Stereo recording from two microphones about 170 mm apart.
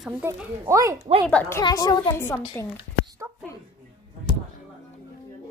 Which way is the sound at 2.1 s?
15° left (ahead or behind).